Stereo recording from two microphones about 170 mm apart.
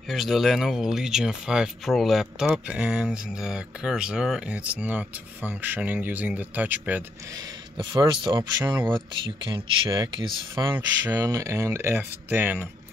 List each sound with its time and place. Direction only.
0.1 s speech: centre (ahead or behind)
7.7 s a man's voice: 25° right (ahead or behind)